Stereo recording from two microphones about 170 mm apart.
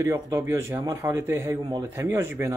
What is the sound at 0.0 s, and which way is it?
Speech, 20° right (ahead or behind).